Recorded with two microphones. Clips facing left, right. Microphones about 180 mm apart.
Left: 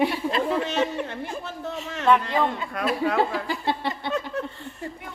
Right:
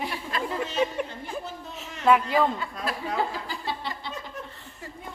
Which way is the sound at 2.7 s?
70° left (ahead or behind).